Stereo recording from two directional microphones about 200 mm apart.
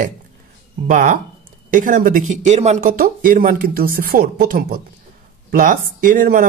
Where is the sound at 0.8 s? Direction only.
40° right (ahead or behind).